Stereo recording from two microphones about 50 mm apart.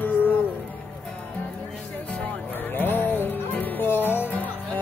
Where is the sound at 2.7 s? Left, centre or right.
Left.